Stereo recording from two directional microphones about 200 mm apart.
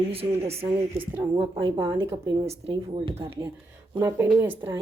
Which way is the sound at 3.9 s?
15° right (ahead or behind).